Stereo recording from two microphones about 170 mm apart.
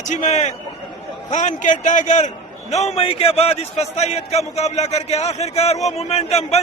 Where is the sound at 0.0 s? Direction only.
45° left (ahead or behind).